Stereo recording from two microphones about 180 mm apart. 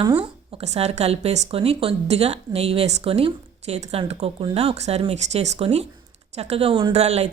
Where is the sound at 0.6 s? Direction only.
35° right (ahead or behind).